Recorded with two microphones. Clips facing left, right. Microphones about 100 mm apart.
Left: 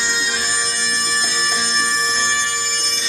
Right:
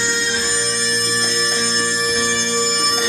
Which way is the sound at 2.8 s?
50° right (ahead or behind).